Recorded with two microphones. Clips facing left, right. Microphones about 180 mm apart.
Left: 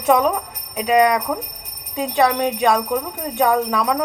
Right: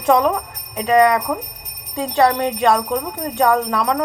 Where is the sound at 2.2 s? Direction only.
10° left (ahead or behind).